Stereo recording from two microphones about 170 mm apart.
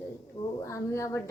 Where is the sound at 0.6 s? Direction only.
20° left (ahead or behind).